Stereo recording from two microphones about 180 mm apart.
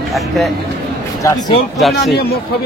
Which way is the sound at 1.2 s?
20° left (ahead or behind).